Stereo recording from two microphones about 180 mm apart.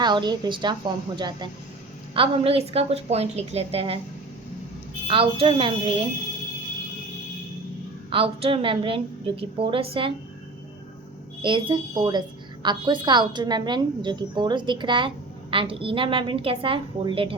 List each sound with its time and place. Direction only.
0.0 s a woman's voice: 25° right (ahead or behind)
5.0 s a woman's voice: 30° right (ahead or behind)
8.1 s a woman's voice: 30° right (ahead or behind)
11.4 s a woman's voice: 25° right (ahead or behind)